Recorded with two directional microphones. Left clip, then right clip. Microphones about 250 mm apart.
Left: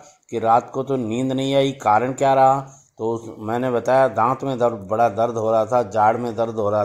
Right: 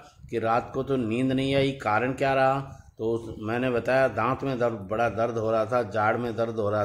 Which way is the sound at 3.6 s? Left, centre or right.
Centre.